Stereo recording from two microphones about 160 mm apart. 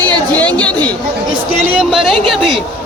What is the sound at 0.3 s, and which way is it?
Chatter, 5° left (ahead or behind).